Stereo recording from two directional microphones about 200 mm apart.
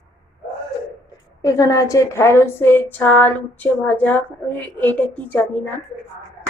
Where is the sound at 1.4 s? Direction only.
15° left (ahead or behind).